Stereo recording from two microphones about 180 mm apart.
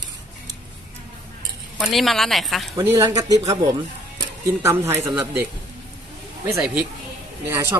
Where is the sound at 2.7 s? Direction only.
15° right (ahead or behind).